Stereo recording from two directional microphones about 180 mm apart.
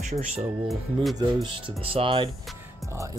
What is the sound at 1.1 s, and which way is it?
Speech, 30° right (ahead or behind).